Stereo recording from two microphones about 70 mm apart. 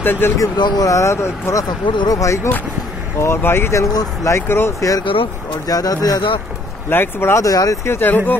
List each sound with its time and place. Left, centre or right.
0.0 s speech: left
0.6 s speech: left
0.8 s speech: left
1.9 s speech: left
2.1 s speech: left
3.9 s speech: left
4.3 s speech: left
4.7 s speech: left
6.9 s speech: left
7.4 s speech: left
7.8 s speech: left